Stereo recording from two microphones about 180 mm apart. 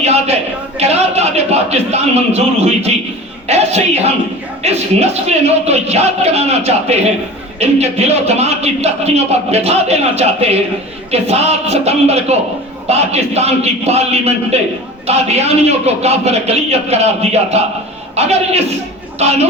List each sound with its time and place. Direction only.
0.0 s speech: 35° right (ahead or behind)